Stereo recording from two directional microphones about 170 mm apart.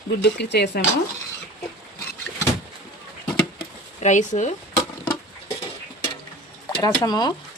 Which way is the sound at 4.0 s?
45° left (ahead or behind).